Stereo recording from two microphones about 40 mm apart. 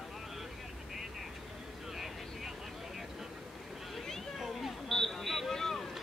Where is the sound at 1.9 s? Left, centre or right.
Centre.